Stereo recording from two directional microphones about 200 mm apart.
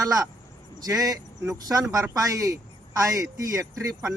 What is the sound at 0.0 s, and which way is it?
Speech, 15° right (ahead or behind).